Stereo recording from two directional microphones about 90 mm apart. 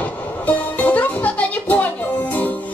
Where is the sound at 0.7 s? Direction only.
20° left (ahead or behind).